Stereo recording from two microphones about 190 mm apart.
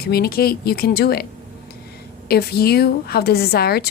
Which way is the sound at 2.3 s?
55° left (ahead or behind).